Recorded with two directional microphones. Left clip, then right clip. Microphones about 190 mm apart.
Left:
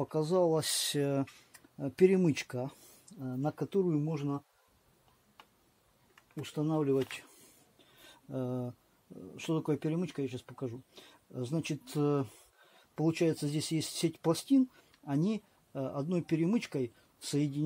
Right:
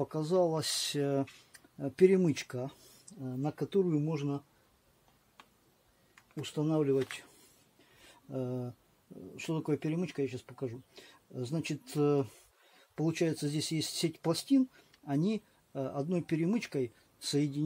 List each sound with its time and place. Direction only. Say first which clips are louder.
0.1 s speech: left 3 dB; 30° left (ahead or behind); by 4.4 s 10° left (ahead or behind)
6.1 s speech: right 1 dB; 10° left (ahead or behind)
8.0 s a sound: even; 30° left (ahead or behind)
9.3 s speech: left 1 dB; 30° left (ahead or behind)